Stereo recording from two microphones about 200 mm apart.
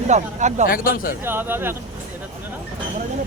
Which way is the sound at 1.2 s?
10° right (ahead or behind).